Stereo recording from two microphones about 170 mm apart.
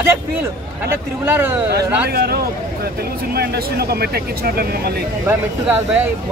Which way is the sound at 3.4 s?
65° right (ahead or behind).